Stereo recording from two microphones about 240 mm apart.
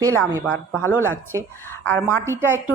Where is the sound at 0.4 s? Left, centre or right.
Centre.